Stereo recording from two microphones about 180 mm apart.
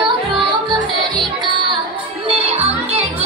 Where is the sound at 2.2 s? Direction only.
35° right (ahead or behind).